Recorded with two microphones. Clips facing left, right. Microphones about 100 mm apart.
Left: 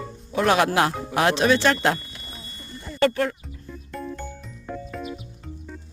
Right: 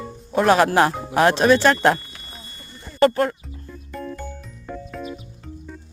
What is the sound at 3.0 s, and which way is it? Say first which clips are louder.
Speech: right 4 dB; 40° right (ahead or behind).